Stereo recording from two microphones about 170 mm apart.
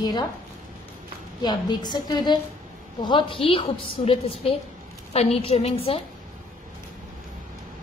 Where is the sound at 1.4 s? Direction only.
25° left (ahead or behind).